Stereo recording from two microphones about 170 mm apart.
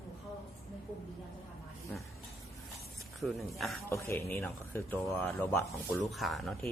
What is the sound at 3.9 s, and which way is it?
Speech, 15° left (ahead or behind).